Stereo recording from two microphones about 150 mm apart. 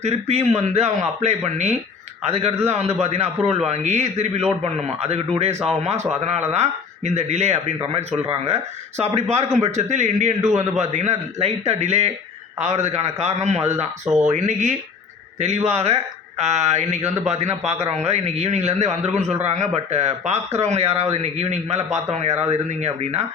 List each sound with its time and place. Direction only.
0.0 s speech: 45° right (ahead or behind)